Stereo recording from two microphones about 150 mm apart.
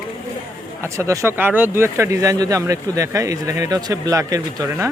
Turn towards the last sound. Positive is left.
turn(degrees=-20)  # may be behind; listen again after turning